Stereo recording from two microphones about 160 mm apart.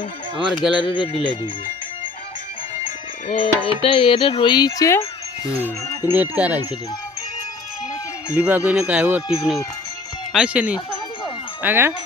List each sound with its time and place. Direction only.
0.4 s speech: 5° right (ahead or behind)
0.8 s speech: 30° left (ahead or behind)
3.3 s speech: 35° left (ahead or behind)
6.1 s speech: 10° right (ahead or behind)
8.4 s speech: 10° right (ahead or behind)
10.3 s speech: 5° right (ahead or behind)